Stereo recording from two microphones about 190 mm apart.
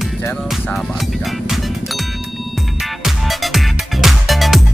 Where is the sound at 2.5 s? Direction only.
Centre (ahead or behind).